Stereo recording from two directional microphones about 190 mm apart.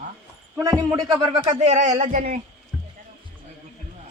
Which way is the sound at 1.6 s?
40° right (ahead or behind).